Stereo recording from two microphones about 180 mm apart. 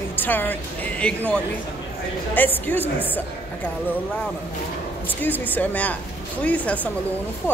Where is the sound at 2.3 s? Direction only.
10° left (ahead or behind).